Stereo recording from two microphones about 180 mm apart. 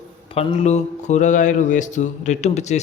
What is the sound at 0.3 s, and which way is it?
Speech, 35° left (ahead or behind).